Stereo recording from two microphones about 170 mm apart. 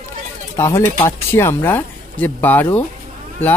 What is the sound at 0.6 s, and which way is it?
Speech, 15° left (ahead or behind).